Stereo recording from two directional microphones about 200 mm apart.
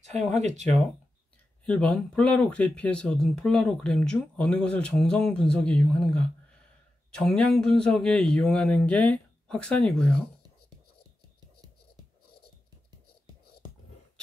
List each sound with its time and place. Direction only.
0.0 s speech: 35° right (ahead or behind)
1.7 s speech: 5° left (ahead or behind)